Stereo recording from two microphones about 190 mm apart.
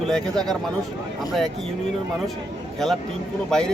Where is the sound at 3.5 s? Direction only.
5° left (ahead or behind).